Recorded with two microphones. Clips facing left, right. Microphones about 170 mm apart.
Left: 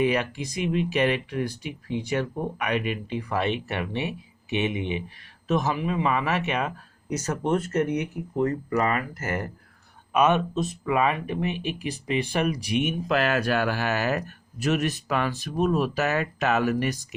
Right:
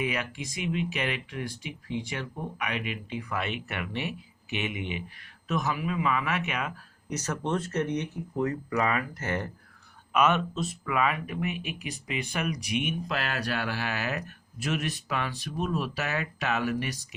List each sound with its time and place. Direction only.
0.0 s speech: 35° left (ahead or behind)
7.4 s speech: 10° left (ahead or behind)
10.1 s speech: 25° left (ahead or behind)
13.1 s speech: 55° left (ahead or behind)